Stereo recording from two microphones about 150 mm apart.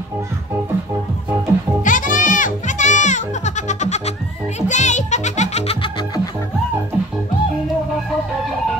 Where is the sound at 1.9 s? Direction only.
60° left (ahead or behind); by 5.9 s 45° left (ahead or behind).